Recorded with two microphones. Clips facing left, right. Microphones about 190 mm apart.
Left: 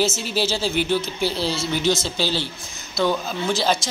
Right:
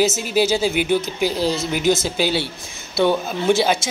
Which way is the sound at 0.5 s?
10° right (ahead or behind).